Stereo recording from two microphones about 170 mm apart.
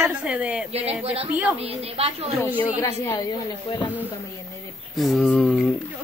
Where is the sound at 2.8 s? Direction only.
20° left (ahead or behind).